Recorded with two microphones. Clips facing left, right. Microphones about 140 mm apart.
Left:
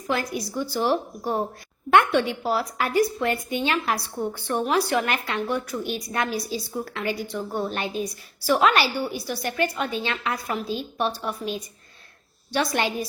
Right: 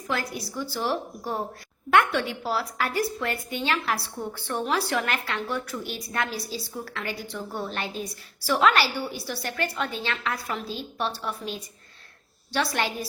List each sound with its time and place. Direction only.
0.1 s a woman's voice: 15° left (ahead or behind)
12.5 s a woman's voice: 15° left (ahead or behind)